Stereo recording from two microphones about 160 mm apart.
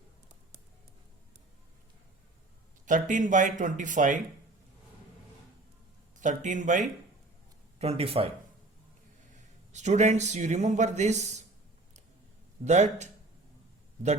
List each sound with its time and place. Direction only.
2.8 s speech: 55° right (ahead or behind)
6.1 s speech: 50° right (ahead or behind)
7.8 s speech: 40° right (ahead or behind)
9.7 s speech: 45° right (ahead or behind)
12.6 s speech: 45° right (ahead or behind)